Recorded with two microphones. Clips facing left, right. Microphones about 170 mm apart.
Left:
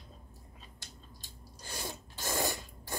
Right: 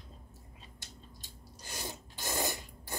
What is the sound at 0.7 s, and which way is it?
Filing, 20° right (ahead or behind).